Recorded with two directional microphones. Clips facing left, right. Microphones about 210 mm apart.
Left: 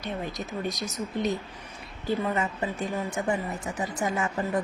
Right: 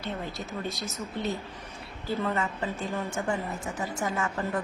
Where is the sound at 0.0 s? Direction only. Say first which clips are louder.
Left 2 dB; 15° left (ahead or behind).